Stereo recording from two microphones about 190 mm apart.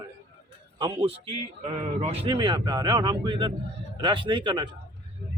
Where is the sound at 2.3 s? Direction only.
20° right (ahead or behind).